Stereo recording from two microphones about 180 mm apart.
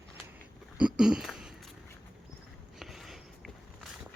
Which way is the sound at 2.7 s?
Centre (ahead or behind).